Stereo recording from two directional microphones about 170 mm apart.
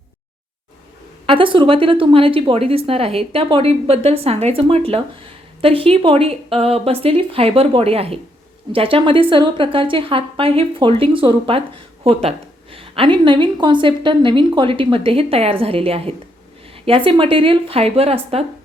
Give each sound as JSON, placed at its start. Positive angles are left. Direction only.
{"t": 1.3, "sound": "speech", "side_deg": -30}
{"t": 12.7, "sound": "speech", "side_deg": -30}